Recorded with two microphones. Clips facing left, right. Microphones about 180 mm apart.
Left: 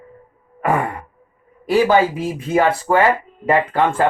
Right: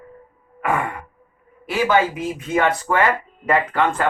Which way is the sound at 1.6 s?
35° left (ahead or behind).